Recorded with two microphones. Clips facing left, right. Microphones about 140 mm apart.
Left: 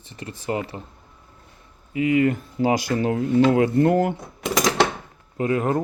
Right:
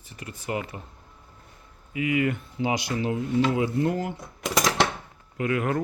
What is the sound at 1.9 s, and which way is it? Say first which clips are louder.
Speech: left 6 dB; 30° left (ahead or behind).